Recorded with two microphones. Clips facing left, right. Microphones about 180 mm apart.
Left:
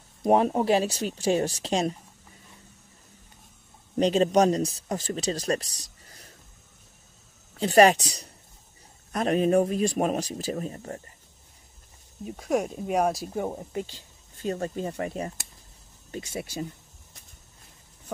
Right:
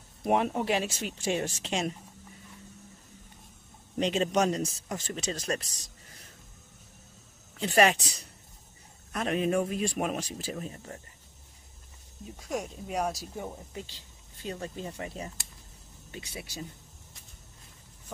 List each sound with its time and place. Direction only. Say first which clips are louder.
0.3 s a man's voice: left 6 dB; 35° left (ahead or behind)
4.0 s a man's voice: left 6 dB; 40° left (ahead or behind)
7.5 s a man's voice: left 6 dB; 40° left (ahead or behind)
12.3 s speech: left 8 dB; 60° left (ahead or behind)
16.1 s speech: left 8 dB; 45° left (ahead or behind)